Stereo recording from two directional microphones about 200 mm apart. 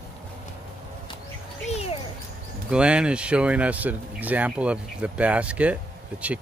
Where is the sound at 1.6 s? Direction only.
30° left (ahead or behind).